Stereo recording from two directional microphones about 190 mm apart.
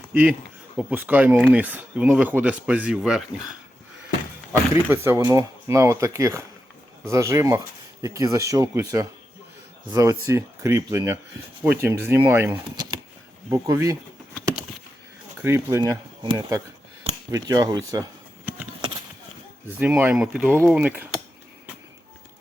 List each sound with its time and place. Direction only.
0.1 s speech: 5° right (ahead or behind)
4.7 s speech: 15° right (ahead or behind)
15.4 s speech: 15° right (ahead or behind)
19.8 s speech: 5° right (ahead or behind)